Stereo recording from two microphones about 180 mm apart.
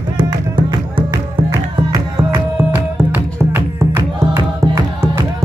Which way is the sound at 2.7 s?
10° right (ahead or behind).